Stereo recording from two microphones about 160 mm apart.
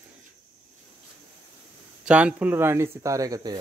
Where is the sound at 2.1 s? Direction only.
5° right (ahead or behind); by 3.5 s 25° right (ahead or behind).